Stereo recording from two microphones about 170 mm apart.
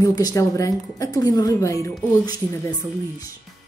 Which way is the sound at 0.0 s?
20° left (ahead or behind).